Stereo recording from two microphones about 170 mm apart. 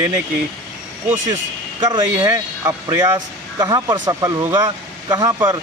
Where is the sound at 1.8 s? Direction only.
25° right (ahead or behind).